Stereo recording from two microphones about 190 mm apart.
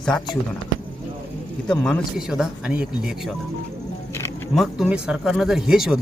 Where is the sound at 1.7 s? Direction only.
5° left (ahead or behind).